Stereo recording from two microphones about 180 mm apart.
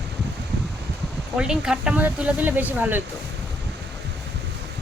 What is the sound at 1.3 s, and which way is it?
Speech, 5° right (ahead or behind).